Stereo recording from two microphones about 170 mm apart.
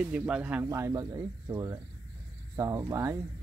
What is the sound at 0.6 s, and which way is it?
A man's voice, 20° right (ahead or behind).